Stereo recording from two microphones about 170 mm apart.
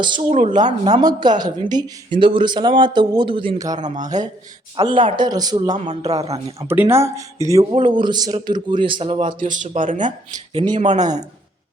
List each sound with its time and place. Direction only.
0.0 s speech: 25° right (ahead or behind)
3.8 s speech: 45° right (ahead or behind)
4.8 s speech: 25° right (ahead or behind)
5.7 s speech: 40° right (ahead or behind)
6.7 s speech: 15° right (ahead or behind); by 9.2 s 30° right (ahead or behind)
9.2 s speech: 50° right (ahead or behind)